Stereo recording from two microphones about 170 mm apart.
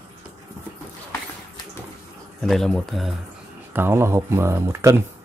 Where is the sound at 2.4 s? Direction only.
Centre (ahead or behind).